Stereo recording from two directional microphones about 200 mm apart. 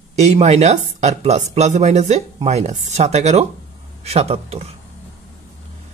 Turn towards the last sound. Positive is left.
turn(degrees=-30)  # may be behind; listen again after turning